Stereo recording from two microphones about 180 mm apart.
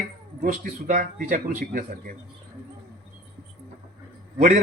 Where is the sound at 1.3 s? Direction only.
45° right (ahead or behind).